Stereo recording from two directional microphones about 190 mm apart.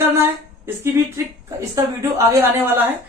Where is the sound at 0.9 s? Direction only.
15° right (ahead or behind).